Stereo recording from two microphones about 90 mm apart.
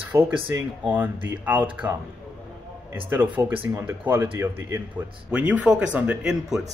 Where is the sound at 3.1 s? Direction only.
20° right (ahead or behind).